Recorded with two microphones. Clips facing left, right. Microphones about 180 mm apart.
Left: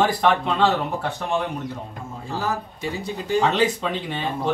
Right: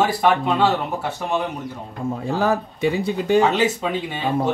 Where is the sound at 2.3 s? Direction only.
60° right (ahead or behind).